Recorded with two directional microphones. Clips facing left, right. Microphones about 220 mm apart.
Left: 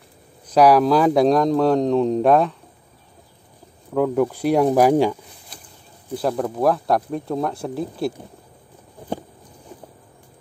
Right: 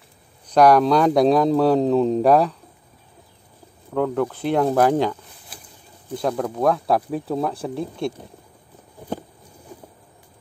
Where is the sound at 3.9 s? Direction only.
10° left (ahead or behind).